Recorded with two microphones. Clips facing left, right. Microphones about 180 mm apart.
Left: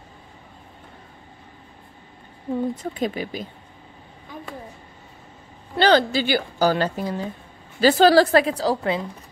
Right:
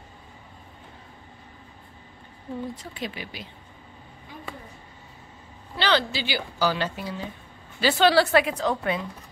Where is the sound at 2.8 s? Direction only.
45° left (ahead or behind).